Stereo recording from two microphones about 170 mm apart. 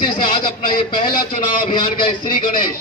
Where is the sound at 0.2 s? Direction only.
50° left (ahead or behind).